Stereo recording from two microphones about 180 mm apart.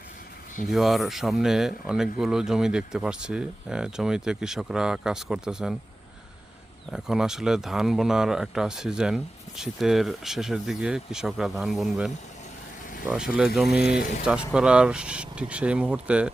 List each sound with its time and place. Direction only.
0.7 s speech: centre (ahead or behind)
6.9 s speech: 5° right (ahead or behind)
12.8 s vehicle: 45° left (ahead or behind)
13.1 s speech: 5° right (ahead or behind)